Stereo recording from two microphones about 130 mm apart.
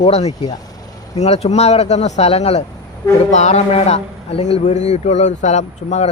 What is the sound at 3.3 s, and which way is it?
A man's voice, 65° left (ahead or behind).